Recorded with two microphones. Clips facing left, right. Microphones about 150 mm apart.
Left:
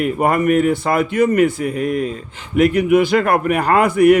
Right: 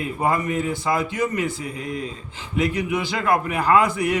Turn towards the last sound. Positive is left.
turn(degrees=60)  # may be behind; listen again after turning